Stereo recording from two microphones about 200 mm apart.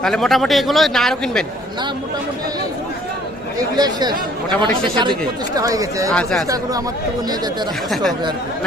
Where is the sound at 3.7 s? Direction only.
20° right (ahead or behind).